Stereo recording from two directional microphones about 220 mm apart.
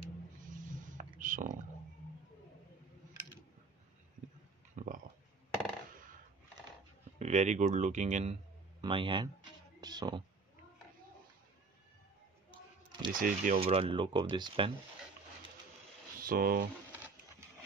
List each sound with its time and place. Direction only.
0.4 s a sound: 35° right (ahead or behind)
4.7 s a sound: 35° right (ahead or behind)
7.2 s a woman's voice: 30° right (ahead or behind)
13.1 s speech: 40° right (ahead or behind)
13.6 s speech: 25° right (ahead or behind)
16.2 s speech: 40° right (ahead or behind)